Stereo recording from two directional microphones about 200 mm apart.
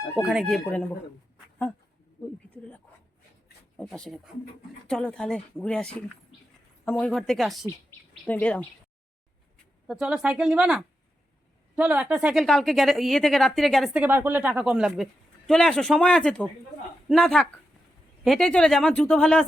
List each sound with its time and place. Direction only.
0.2 s a woman's voice: centre (ahead or behind)
2.2 s speech: 20° left (ahead or behind)
3.8 s a woman's voice: 5° left (ahead or behind)
9.8 s a woman's voice: 5° right (ahead or behind)